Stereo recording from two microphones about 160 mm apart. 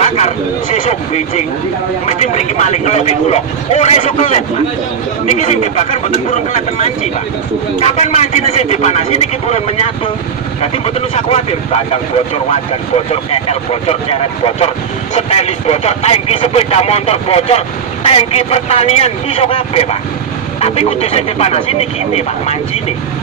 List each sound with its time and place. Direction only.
0.0 s a sound: 45° left (ahead or behind)
2.0 s speech: 45° left (ahead or behind)
7.8 s speech: 45° left (ahead or behind)
10.6 s speech: 40° left (ahead or behind)
12.9 s speech: 40° left (ahead or behind)